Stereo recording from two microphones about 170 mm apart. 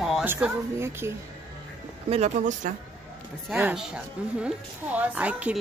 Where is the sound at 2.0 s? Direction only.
40° right (ahead or behind).